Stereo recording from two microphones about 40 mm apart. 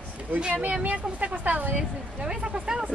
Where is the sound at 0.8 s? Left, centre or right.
Right.